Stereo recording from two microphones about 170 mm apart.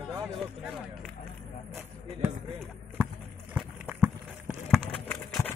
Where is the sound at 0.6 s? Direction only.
Centre (ahead or behind).